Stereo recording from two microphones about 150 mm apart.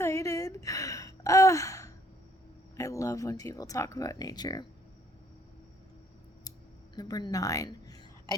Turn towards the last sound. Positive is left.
turn(degrees=20)  # may be behind; listen again after turning